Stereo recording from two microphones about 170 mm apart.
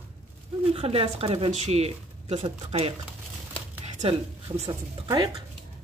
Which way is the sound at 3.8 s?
40° right (ahead or behind).